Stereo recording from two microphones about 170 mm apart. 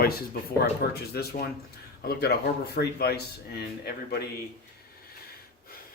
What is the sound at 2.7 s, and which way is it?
Speech, 70° left (ahead or behind).